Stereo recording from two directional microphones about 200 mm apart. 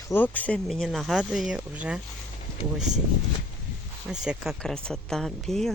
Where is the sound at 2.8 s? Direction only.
35° right (ahead or behind).